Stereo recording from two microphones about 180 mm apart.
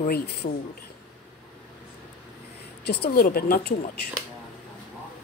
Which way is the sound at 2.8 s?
60° left (ahead or behind).